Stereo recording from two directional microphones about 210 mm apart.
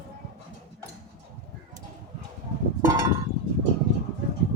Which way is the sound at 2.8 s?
15° right (ahead or behind).